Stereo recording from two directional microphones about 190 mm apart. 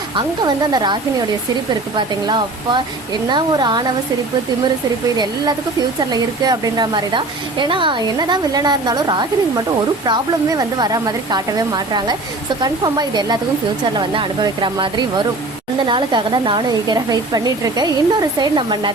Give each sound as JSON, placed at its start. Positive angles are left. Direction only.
{"t": 0.2, "sound": "a woman's voice", "side_deg": -20}
{"t": 2.0, "sound": "a woman's voice", "side_deg": -25}
{"t": 5.1, "sound": "a woman's voice", "side_deg": -20}